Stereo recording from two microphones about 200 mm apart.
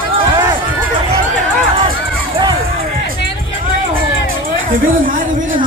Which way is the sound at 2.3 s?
20° right (ahead or behind).